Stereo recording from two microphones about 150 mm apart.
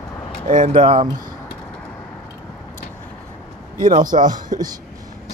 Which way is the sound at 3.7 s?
65° right (ahead or behind).